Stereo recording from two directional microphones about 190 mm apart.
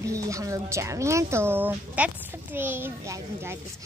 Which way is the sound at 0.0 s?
15° right (ahead or behind).